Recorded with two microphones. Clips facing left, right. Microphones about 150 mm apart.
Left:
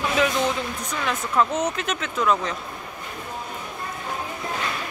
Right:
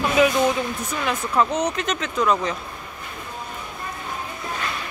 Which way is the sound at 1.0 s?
5° right (ahead or behind).